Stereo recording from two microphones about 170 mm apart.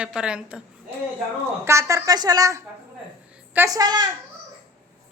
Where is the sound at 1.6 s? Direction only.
15° right (ahead or behind).